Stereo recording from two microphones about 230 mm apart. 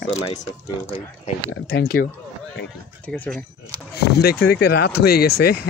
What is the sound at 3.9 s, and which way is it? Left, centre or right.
Speech, left.